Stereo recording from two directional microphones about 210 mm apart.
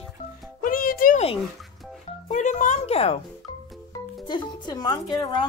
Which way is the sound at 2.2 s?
35° left (ahead or behind).